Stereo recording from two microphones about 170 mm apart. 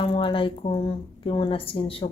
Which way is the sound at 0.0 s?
30° left (ahead or behind).